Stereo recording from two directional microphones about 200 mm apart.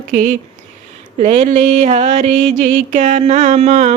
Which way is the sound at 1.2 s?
35° right (ahead or behind).